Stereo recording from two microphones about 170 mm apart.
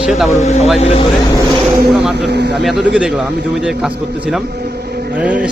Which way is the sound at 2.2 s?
75° right (ahead or behind).